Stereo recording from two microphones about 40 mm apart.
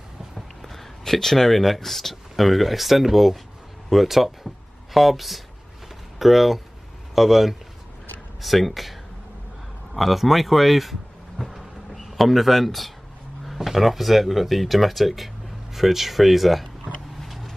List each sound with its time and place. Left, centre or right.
0.7 s speech: centre
9.9 s speech: centre
17.2 s vehicle: centre